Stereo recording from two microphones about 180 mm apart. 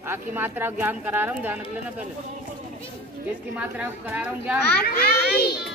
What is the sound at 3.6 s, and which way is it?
Speech, 10° right (ahead or behind).